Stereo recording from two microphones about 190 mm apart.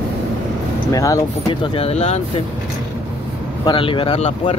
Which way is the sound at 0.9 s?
15° left (ahead or behind).